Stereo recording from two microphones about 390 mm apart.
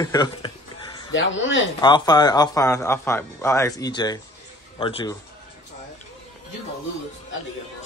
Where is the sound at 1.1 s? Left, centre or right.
Left.